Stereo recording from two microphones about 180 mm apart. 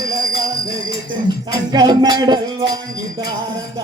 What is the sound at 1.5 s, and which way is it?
Music, 25° right (ahead or behind).